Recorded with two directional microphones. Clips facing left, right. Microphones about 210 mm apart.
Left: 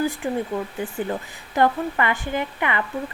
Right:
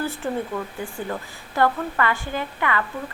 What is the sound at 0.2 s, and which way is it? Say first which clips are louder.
A woman's voice: left 2 dB; 15° left (ahead or behind).